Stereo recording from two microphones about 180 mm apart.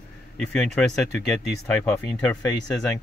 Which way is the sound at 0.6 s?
5° left (ahead or behind).